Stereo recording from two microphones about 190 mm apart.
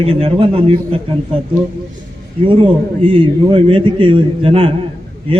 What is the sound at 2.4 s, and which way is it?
A man's voice, 25° right (ahead or behind).